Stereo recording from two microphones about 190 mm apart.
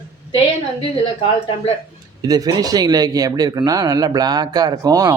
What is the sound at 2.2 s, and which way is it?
Speech, 20° right (ahead or behind).